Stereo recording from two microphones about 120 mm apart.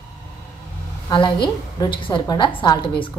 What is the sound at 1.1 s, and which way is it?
Speech, 40° left (ahead or behind).